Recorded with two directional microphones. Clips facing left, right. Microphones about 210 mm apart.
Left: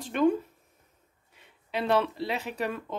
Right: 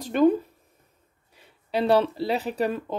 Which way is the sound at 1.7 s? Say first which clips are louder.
Right 5 dB; 35° right (ahead or behind).